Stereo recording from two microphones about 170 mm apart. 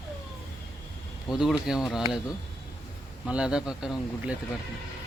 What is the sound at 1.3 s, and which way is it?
Speech, centre (ahead or behind).